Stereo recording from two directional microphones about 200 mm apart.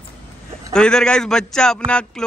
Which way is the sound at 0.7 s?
5° left (ahead or behind).